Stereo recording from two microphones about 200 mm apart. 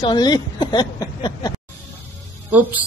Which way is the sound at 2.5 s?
10° right (ahead or behind).